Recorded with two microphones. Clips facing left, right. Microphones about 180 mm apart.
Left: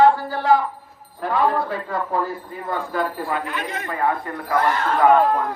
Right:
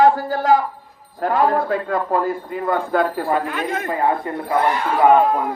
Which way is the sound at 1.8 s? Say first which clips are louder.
Right 4 dB; 70° right (ahead or behind).